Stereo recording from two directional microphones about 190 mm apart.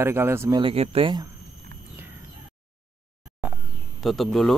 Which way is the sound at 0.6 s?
30° right (ahead or behind).